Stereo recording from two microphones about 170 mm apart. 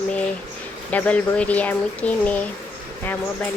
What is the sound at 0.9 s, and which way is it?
Speech, 10° left (ahead or behind).